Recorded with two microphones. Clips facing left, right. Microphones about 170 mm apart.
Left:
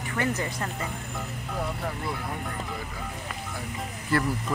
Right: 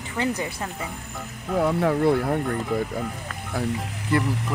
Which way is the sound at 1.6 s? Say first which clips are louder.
Right 12 dB; 80° right.